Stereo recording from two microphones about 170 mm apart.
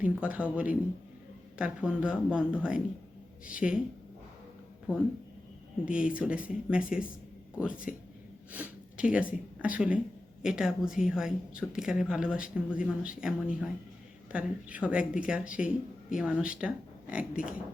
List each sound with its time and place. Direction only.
0.0 s a woman's voice: 10° right (ahead or behind)
5.8 s a woman's voice: 5° right (ahead or behind)